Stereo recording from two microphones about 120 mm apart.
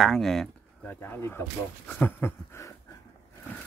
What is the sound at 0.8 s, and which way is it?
Speech, 15° left (ahead or behind).